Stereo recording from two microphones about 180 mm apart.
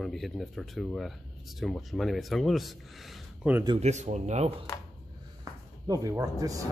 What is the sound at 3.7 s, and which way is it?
Speech, 40° right (ahead or behind).